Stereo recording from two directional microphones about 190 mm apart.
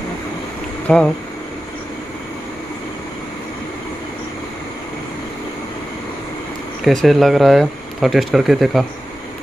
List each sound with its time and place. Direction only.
0.8 s speech: 5° left (ahead or behind)
6.8 s speech: centre (ahead or behind)